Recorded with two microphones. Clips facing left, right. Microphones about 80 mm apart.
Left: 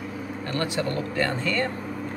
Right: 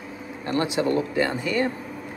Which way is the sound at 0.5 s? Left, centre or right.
Centre.